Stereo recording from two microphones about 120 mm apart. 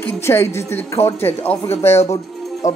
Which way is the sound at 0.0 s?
20° left (ahead or behind).